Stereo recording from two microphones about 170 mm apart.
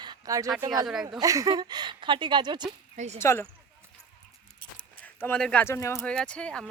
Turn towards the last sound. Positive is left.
turn(degrees=5)  # may be behind; listen again after turning